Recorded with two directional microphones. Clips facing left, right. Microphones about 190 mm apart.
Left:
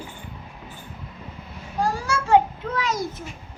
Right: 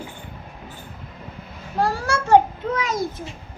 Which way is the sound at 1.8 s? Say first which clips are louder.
Right 2 dB; 50° right (ahead or behind).